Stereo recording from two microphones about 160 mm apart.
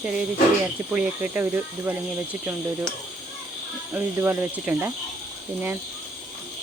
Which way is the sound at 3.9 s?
15° right (ahead or behind).